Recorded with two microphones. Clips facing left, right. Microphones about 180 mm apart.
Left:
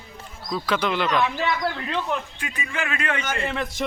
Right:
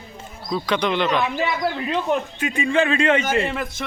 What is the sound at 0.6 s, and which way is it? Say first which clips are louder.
Speech: right 2 dB; 5° left (ahead or behind).